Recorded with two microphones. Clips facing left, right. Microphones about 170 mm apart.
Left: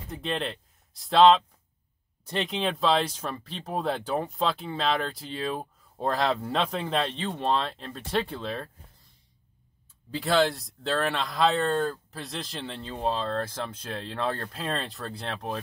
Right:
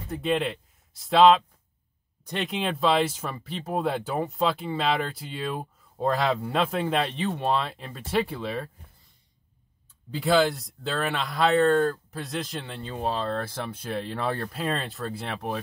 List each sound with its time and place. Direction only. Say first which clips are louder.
0.1 s speech: right 5 dB; centre (ahead or behind)
10.1 s speech: right 2 dB; centre (ahead or behind)